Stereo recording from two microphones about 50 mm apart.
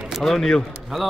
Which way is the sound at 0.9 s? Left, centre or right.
Centre.